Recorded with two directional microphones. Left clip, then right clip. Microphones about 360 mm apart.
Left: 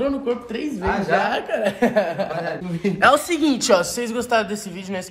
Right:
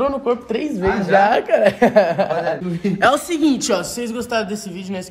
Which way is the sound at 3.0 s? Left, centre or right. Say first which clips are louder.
Even; centre.